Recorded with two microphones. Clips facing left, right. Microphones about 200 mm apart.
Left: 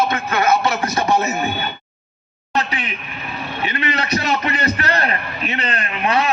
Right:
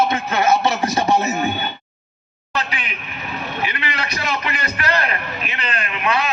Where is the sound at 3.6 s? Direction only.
35° left (ahead or behind).